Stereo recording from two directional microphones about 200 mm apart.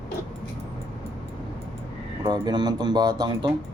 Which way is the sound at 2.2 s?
20° right (ahead or behind).